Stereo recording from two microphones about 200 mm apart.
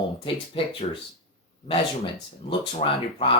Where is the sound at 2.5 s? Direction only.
25° left (ahead or behind).